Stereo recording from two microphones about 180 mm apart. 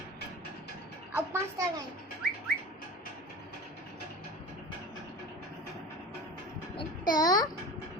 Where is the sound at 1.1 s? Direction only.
15° right (ahead or behind).